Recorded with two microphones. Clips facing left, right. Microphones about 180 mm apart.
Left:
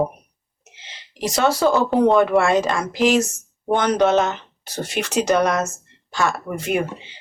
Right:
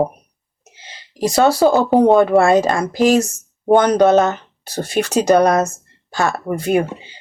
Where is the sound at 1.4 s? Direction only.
35° right (ahead or behind).